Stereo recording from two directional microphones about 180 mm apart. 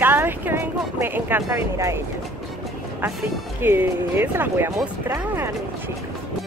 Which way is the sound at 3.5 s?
10° right (ahead or behind).